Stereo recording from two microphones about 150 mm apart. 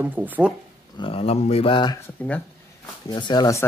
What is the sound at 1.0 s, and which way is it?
Speech, 40° left (ahead or behind).